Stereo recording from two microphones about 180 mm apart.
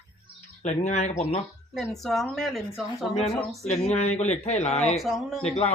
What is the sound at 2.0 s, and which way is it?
Speech, centre (ahead or behind).